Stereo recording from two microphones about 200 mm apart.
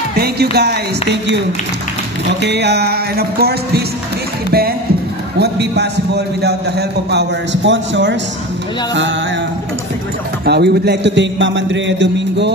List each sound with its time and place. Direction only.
0.2 s speech: 55° right (ahead or behind)
2.4 s a man's voice: 55° right (ahead or behind)
10.4 s a man's voice: 55° right (ahead or behind)